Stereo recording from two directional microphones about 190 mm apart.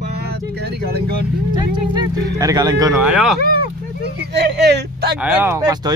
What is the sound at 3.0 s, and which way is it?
Speech, 5° right (ahead or behind).